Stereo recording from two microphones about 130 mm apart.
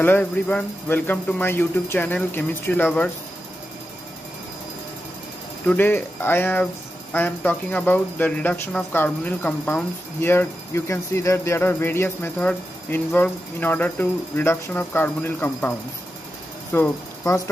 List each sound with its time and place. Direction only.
0.0 s speech: 10° left (ahead or behind)
5.7 s speech: 15° left (ahead or behind)
16.7 s speech: 20° left (ahead or behind)